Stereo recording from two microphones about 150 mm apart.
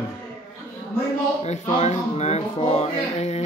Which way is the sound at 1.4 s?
50° left (ahead or behind).